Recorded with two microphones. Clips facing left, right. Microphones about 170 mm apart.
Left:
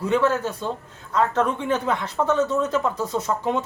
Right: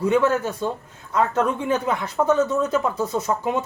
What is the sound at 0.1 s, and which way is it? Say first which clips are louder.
Speech: left 1 dB; 15° right (ahead or behind).